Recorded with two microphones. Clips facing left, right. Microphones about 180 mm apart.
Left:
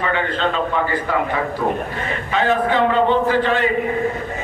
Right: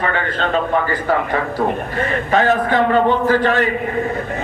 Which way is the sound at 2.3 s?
45° right (ahead or behind).